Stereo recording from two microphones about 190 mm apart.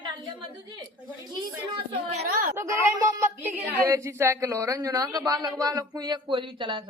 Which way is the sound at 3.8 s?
15° right (ahead or behind).